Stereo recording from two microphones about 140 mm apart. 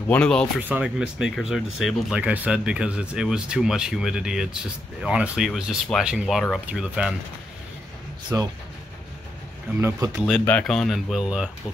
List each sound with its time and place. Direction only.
0.1 s speech: 5° left (ahead or behind)
0.6 s speech: 10° right (ahead or behind)
8.3 s speech: 20° right (ahead or behind)
9.8 s speech: 20° right (ahead or behind)
10.4 s speech: 10° left (ahead or behind)